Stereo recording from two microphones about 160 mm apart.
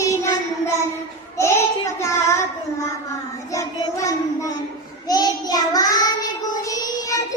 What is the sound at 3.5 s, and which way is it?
Child singing, 20° left (ahead or behind).